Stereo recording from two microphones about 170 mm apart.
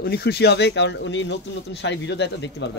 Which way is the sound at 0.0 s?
70° left (ahead or behind).